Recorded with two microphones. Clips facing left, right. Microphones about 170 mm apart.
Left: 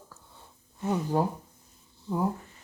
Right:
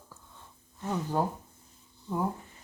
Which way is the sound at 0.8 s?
10° left (ahead or behind).